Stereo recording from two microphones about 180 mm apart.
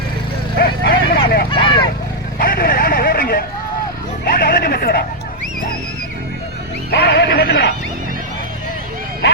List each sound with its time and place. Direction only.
0.5 s clip-clop: 60° left (ahead or behind)
1.5 s vehicle: 25° left (ahead or behind)
2.4 s vehicle: 55° left (ahead or behind)
4.4 s speech: 60° left (ahead or behind)
6.9 s speech: 70° left (ahead or behind)